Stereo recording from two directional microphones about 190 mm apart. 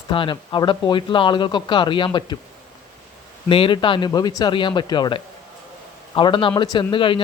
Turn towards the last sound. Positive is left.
turn(degrees=25)  # may be behind; listen again after turning